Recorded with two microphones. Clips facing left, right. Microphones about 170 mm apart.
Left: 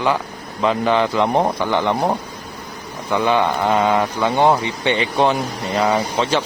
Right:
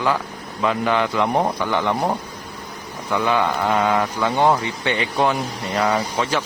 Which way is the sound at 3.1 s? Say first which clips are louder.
Left 3 dB; 25° left (ahead or behind).